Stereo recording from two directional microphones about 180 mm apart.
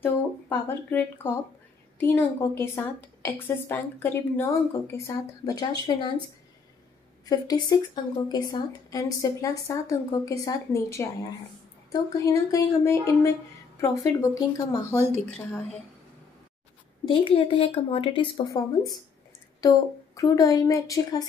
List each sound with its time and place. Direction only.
0.0 s a woman's voice: 10° left (ahead or behind)
7.2 s a woman's voice: 20° left (ahead or behind)
17.0 s a woman's voice: 30° left (ahead or behind)
20.2 s a woman's voice: 20° left (ahead or behind)